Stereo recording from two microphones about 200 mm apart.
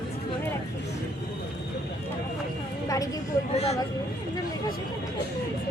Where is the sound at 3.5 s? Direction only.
30° left (ahead or behind).